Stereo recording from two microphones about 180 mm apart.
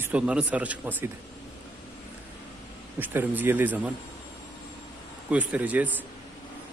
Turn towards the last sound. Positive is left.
turn(degrees=-10)  # may be behind; listen again after turning